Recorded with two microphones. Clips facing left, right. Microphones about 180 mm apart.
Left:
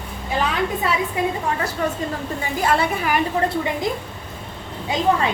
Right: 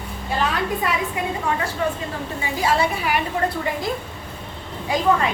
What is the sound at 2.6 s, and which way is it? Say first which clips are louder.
Speech: even; 50° left (ahead or behind).